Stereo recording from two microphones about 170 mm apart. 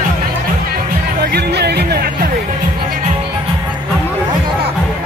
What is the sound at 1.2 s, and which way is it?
Music, 70° right (ahead or behind).